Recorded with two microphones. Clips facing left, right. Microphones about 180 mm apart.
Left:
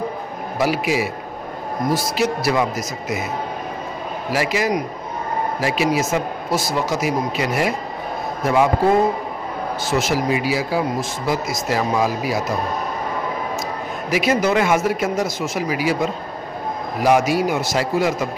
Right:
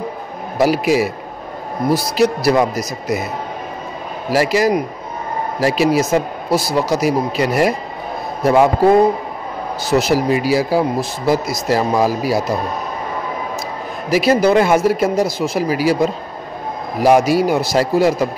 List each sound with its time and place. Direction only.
0.6 s speech: 40° right (ahead or behind)
4.3 s speech: 40° right (ahead or behind)
9.8 s speech: 35° right (ahead or behind)
14.1 s speech: 35° right (ahead or behind)